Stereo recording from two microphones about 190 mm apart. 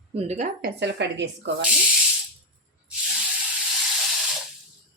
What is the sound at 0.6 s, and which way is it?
Speech, 65° right (ahead or behind).